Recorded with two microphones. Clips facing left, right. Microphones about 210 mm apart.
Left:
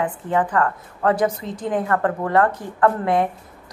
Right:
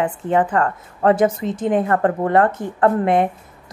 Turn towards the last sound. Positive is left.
turn(degrees=-20)  # may be behind; listen again after turning